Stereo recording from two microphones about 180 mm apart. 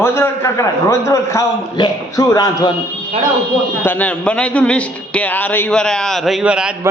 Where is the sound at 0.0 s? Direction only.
15° left (ahead or behind).